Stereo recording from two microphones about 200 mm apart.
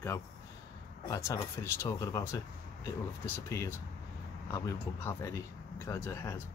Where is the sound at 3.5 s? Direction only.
15° left (ahead or behind).